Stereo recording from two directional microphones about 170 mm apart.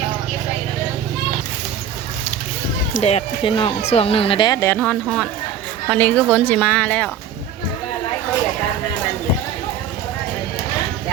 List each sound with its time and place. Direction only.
2.9 s speech: 40° left (ahead or behind); by 7.1 s 10° left (ahead or behind)